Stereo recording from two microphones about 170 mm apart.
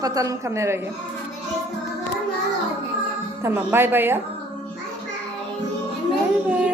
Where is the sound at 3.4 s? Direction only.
15° right (ahead or behind).